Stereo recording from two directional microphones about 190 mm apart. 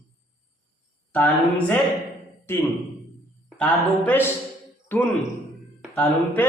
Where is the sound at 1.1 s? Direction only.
10° left (ahead or behind).